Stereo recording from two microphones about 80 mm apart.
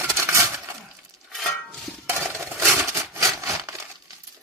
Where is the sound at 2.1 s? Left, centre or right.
Right.